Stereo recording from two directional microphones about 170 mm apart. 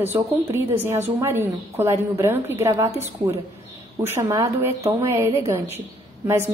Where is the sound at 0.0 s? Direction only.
15° right (ahead or behind).